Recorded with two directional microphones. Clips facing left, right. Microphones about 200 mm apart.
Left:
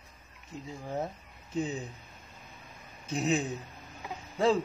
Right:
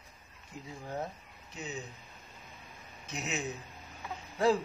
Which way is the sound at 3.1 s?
35° left (ahead or behind).